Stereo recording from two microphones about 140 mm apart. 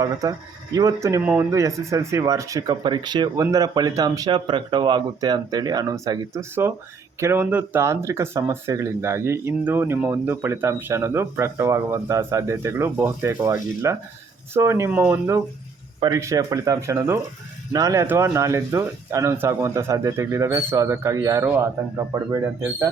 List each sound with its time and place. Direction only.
0.0 s speech: 25° right (ahead or behind)
16.0 s speech: 25° right (ahead or behind)